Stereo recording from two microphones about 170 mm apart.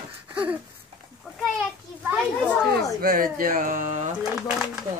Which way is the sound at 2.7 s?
60° right (ahead or behind).